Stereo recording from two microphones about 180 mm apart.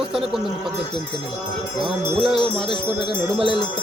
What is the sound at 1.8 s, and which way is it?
Speech, 5° right (ahead or behind).